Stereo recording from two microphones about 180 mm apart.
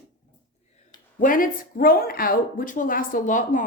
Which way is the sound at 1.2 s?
50° left (ahead or behind).